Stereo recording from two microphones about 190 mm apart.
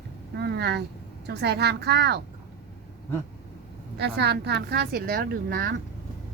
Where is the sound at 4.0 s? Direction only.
60° right (ahead or behind).